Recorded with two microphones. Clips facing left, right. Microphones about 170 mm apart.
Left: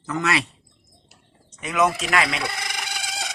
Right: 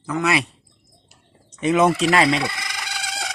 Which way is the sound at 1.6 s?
25° right (ahead or behind).